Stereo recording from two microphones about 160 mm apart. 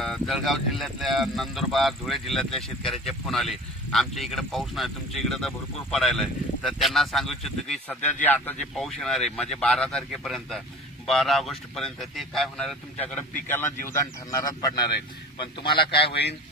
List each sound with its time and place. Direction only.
0.0 s speech: centre (ahead or behind); by 14.9 s 20° left (ahead or behind)
15.6 s a man's voice: 30° left (ahead or behind)